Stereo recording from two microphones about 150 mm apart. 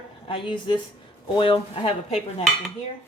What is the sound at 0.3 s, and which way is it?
A woman's voice, 35° left (ahead or behind).